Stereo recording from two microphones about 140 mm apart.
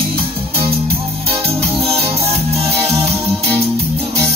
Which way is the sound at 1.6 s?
45° right (ahead or behind).